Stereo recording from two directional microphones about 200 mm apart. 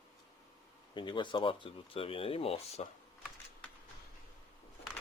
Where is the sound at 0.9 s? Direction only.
25° left (ahead or behind).